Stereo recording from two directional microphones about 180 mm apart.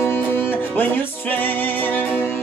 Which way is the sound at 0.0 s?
10° left (ahead or behind).